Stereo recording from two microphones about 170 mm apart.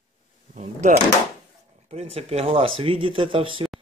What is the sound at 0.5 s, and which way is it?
Drawer open or close, 45° right (ahead or behind).